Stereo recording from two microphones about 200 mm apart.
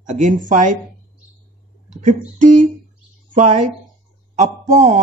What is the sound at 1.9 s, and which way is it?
Speech, 40° right (ahead or behind).